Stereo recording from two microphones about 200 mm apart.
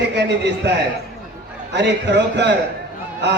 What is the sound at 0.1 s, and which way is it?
Speech, 60° right (ahead or behind).